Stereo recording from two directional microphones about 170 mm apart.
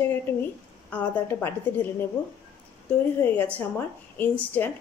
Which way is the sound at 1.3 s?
10° left (ahead or behind).